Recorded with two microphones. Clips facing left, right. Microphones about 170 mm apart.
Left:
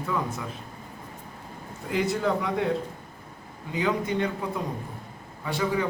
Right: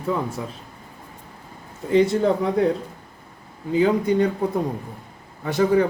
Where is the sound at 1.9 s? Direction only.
35° right (ahead or behind).